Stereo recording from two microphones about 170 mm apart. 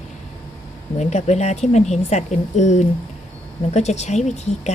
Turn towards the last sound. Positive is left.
turn(degrees=40)  # may be behind; listen again after turning